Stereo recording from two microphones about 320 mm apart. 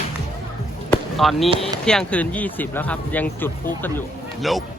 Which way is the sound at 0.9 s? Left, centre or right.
Centre.